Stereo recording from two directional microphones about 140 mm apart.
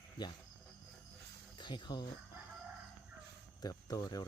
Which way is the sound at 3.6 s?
25° left (ahead or behind).